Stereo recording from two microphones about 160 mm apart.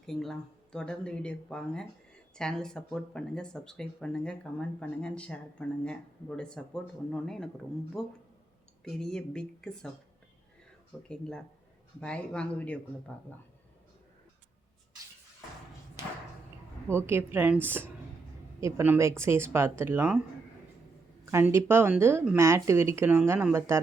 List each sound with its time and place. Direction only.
0.0 s speech: centre (ahead or behind)
11.1 s speech: 5° left (ahead or behind)
16.9 s speech: 15° right (ahead or behind)
21.5 s speech: 15° right (ahead or behind)